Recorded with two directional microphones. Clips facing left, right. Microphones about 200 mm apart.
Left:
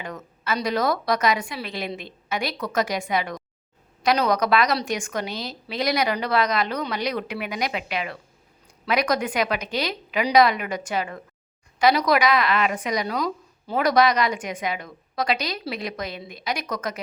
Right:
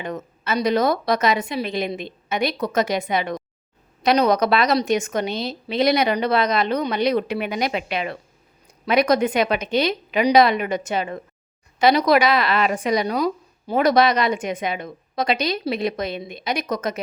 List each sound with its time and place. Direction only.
0.0 s a woman's voice: 20° right (ahead or behind)